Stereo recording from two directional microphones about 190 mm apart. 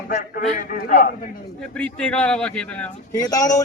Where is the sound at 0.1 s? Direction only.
45° left (ahead or behind).